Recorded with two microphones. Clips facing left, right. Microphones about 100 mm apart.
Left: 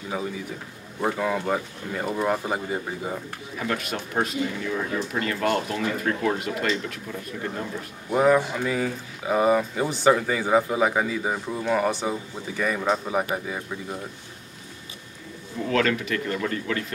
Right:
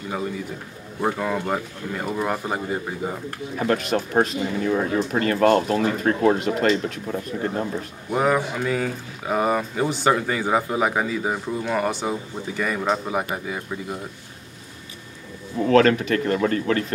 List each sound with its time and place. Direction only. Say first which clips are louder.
1.0 s speech: right 1 dB; 5° right (ahead or behind)
3.5 s speech: right 7 dB; 40° right (ahead or behind)
8.1 s speech: left 1 dB; 5° right (ahead or behind)
15.6 s speech: right 7 dB; 40° right (ahead or behind)